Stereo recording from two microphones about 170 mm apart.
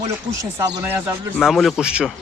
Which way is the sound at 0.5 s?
15° right (ahead or behind).